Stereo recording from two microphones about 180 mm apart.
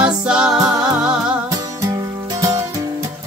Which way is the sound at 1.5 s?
20° right (ahead or behind).